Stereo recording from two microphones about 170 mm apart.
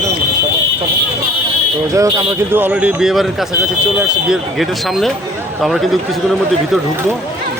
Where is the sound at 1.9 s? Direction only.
20° right (ahead or behind); by 3.2 s 5° right (ahead or behind).